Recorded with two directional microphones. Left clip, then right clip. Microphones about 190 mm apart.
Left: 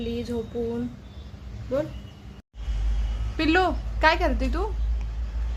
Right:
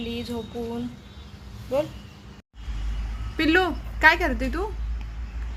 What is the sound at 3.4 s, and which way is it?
A woman's voice, centre (ahead or behind).